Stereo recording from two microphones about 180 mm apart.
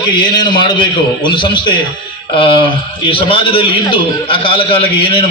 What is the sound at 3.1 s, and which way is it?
A man's voice, 30° left (ahead or behind).